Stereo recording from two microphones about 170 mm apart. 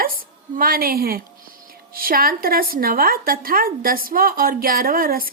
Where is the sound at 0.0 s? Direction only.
60° right (ahead or behind).